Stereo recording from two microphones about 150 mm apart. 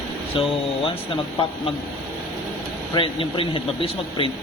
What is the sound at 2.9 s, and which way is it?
Speech, 35° left (ahead or behind).